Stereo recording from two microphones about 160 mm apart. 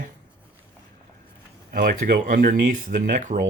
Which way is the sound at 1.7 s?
65° right (ahead or behind).